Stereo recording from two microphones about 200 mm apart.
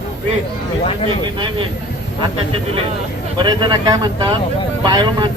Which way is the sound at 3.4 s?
20° right (ahead or behind).